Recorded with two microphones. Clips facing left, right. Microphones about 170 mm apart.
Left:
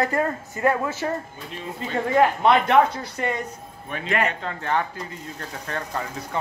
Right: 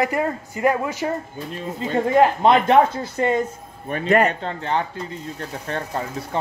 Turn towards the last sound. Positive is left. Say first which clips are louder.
# right 3 dB
turn(degrees=-30)  # may be behind; listen again after turning